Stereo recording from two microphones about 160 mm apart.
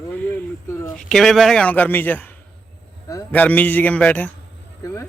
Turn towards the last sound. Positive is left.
turn(degrees=10)  # may be behind; listen again after turning